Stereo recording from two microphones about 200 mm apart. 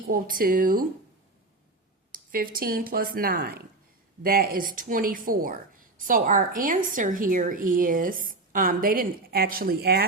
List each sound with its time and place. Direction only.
0.1 s a woman's voice: 45° right (ahead or behind)
2.1 s a woman's voice: 45° right (ahead or behind)